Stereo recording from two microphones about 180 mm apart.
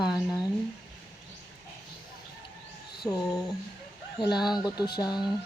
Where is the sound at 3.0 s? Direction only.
25° left (ahead or behind).